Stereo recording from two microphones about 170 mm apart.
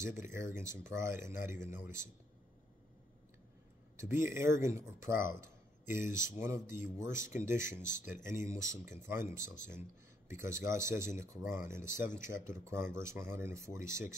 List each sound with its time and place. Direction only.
0.1 s speech: 15° right (ahead or behind)
4.0 s speech: 15° right (ahead or behind)